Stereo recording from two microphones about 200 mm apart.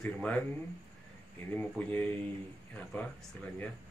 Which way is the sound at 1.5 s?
10° left (ahead or behind).